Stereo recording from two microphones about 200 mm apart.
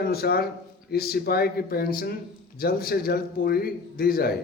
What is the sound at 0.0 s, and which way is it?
A man's voice, 50° left (ahead or behind).